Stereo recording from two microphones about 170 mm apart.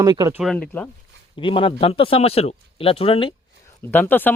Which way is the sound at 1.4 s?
30° left (ahead or behind).